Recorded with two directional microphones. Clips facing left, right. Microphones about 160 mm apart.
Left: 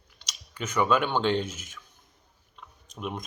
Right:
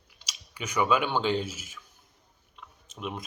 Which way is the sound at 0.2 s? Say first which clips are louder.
Left 3 dB; 10° right (ahead or behind).